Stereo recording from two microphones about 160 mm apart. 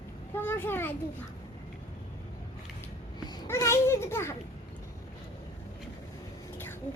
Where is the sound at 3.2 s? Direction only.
25° left (ahead or behind).